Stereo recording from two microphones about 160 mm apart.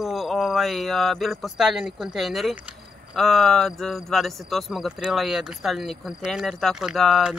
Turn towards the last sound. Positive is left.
turn(degrees=0)  # may be behind; listen again after turning